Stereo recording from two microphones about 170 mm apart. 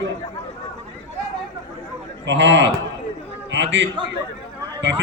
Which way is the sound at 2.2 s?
90° right.